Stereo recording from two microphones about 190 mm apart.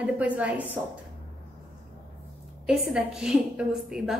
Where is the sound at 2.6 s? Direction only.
5° right (ahead or behind).